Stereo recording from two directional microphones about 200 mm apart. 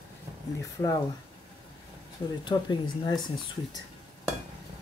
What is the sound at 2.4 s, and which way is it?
Speech, 20° left (ahead or behind).